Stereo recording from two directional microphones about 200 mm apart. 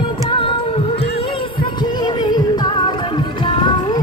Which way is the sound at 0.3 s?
25° left (ahead or behind).